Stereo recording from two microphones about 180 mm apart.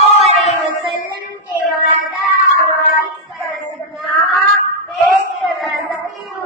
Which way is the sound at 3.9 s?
Centre (ahead or behind).